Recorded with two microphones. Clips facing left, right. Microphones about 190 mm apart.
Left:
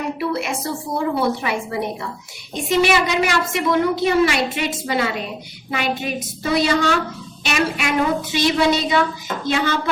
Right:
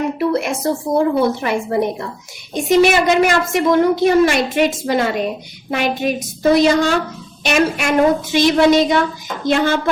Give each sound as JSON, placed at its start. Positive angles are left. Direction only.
{"t": 0.2, "sound": "a woman's voice", "side_deg": -45}